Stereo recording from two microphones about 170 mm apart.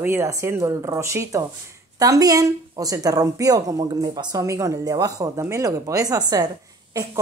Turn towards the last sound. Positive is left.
turn(degrees=-20)  # may be behind; listen again after turning